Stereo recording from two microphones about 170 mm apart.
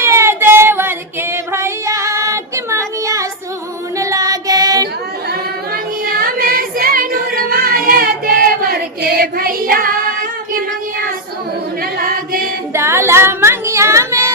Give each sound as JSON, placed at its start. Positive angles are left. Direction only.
{"t": 0.0, "sound": "female singing", "side_deg": -15}
{"t": 3.9, "sound": "child singing", "side_deg": -20}
{"t": 5.3, "sound": "child singing", "side_deg": -60}
{"t": 12.0, "sound": "singing", "side_deg": -60}
{"t": 12.7, "sound": "female singing", "side_deg": -15}